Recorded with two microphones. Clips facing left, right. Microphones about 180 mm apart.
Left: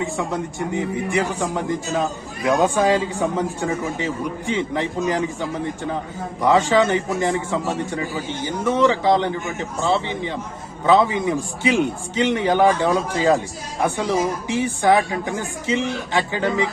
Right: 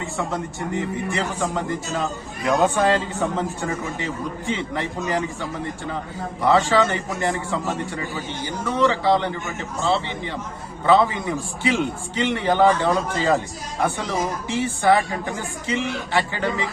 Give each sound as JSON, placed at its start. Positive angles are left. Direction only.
{"t": 0.0, "sound": "a man's voice", "side_deg": 15}